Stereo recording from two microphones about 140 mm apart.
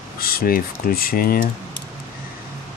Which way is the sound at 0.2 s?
90° left.